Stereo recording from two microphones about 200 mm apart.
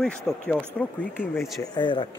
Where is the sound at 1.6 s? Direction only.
20° left (ahead or behind).